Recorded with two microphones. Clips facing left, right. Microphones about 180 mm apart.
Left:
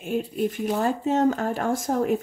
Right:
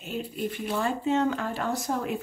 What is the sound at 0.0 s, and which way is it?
Speech, 45° left (ahead or behind).